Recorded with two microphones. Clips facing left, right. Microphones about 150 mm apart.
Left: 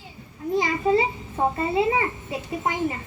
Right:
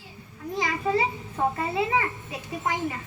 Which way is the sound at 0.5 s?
25° left (ahead or behind).